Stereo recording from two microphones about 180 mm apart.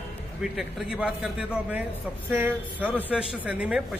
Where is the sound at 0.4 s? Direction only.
5° right (ahead or behind).